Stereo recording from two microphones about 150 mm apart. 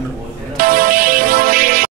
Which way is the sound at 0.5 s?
70° right (ahead or behind).